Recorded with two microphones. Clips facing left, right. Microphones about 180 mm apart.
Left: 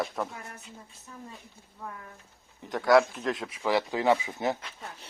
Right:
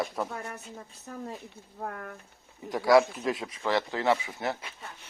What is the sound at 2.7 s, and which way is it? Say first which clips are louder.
Speech: even; centre (ahead or behind).